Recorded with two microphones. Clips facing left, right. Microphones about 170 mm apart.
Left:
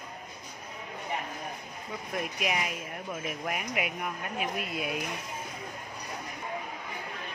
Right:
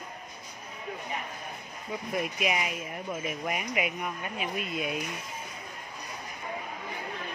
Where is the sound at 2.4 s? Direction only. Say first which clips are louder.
Right 2 dB; 5° right (ahead or behind).